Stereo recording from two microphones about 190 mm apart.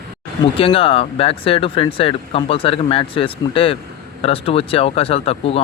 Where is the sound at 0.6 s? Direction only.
30° left (ahead or behind).